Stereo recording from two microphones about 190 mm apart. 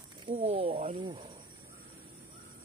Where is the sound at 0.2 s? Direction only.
30° right (ahead or behind).